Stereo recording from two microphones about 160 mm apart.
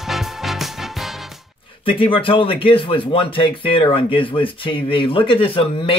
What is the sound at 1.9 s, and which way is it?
Speech, 35° left (ahead or behind).